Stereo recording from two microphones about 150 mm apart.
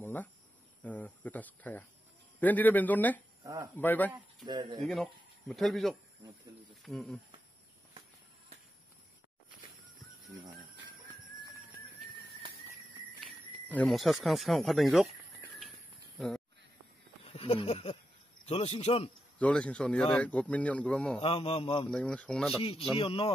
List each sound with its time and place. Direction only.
0.0 s cricket: 15° left (ahead or behind)
0.8 s speech: 10° left (ahead or behind)
3.4 s speech: 25° right (ahead or behind)
3.7 s speech: 10° left (ahead or behind)
4.5 s speech: 30° right (ahead or behind)
4.7 s speech: centre (ahead or behind)
13.7 s speech: 10° left (ahead or behind)
13.9 s speech: centre (ahead or behind)
16.2 s speech: 5° left (ahead or behind)
17.2 s a man's voice: 45° left (ahead or behind)
19.3 s speech: 10° left (ahead or behind)
21.2 s a man's voice: 40° left (ahead or behind)
21.8 s speech: 10° left (ahead or behind)
22.6 s a man's voice: 40° left (ahead or behind)